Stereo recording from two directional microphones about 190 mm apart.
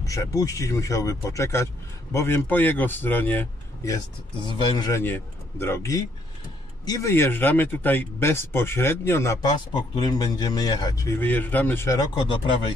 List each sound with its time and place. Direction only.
0.0 s speech: 15° left (ahead or behind)